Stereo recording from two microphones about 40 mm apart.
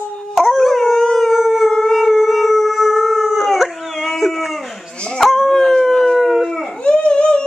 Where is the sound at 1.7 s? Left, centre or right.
Centre.